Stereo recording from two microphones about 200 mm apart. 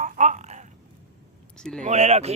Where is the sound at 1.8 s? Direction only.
35° right (ahead or behind).